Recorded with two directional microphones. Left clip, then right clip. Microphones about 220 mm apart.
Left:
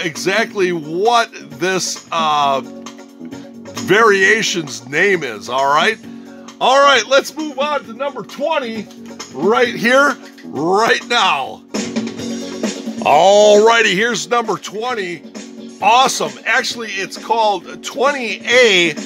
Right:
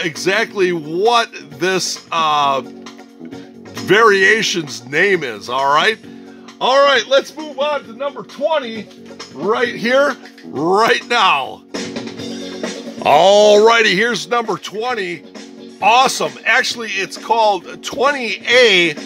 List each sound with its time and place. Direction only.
0.0 s speech: centre (ahead or behind)
3.8 s speech: centre (ahead or behind); by 7.2 s 15° left (ahead or behind)
7.5 s speech: 35° left (ahead or behind)
10.5 s speech: centre (ahead or behind)
11.7 s music: 45° left (ahead or behind)
13.0 s speech: 10° right (ahead or behind)